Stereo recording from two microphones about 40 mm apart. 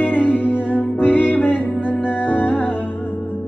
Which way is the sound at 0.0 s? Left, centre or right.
Left.